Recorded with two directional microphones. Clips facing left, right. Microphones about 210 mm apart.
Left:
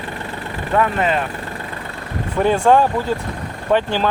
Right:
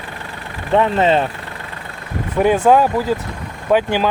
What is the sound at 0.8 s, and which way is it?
Speech, 30° right (ahead or behind).